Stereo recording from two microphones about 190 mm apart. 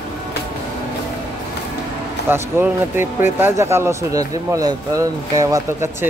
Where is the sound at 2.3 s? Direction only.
10° right (ahead or behind).